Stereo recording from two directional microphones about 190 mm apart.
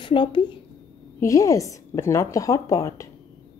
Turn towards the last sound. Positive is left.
turn(degrees=15)  # may be behind; listen again after turning